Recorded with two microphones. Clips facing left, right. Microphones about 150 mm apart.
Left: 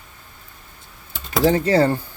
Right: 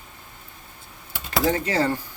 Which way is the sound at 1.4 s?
30° left (ahead or behind).